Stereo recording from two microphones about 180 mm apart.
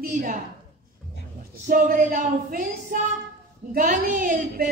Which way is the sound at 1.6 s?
45° right (ahead or behind).